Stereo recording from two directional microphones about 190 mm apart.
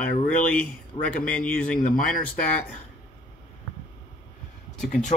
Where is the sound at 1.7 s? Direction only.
45° left (ahead or behind).